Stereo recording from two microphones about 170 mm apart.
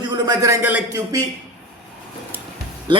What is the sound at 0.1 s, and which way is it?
Speech, 20° right (ahead or behind).